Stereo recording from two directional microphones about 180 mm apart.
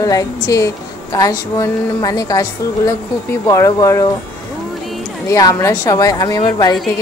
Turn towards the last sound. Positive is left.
turn(degrees=20)  # may be behind; listen again after turning